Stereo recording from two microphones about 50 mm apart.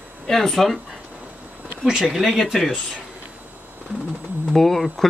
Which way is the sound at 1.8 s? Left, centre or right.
Centre.